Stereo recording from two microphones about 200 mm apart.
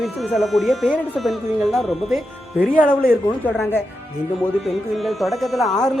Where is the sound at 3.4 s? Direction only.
10° left (ahead or behind).